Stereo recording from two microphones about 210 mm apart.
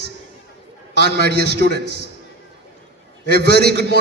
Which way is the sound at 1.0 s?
50° right (ahead or behind).